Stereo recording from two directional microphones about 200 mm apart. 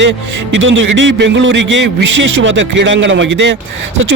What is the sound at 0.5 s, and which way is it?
Speech, 70° right (ahead or behind).